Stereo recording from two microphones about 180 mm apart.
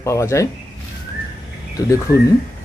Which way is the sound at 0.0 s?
15° left (ahead or behind).